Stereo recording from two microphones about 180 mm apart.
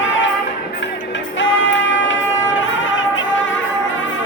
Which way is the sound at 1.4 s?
90° left.